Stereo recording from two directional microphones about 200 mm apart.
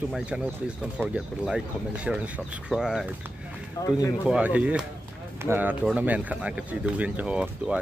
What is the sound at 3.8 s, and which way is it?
Speech, 15° left (ahead or behind).